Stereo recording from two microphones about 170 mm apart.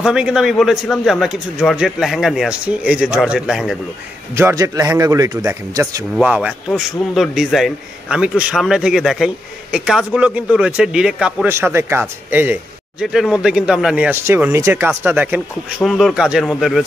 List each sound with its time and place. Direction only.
0.0 s a man's voice: 5° right (ahead or behind)
4.4 s speech: 15° right (ahead or behind)
6.1 s a man's voice: 5° right (ahead or behind)
13.0 s a man's voice: centre (ahead or behind)